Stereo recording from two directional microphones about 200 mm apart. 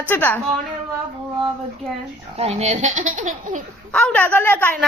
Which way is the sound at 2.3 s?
30° right (ahead or behind).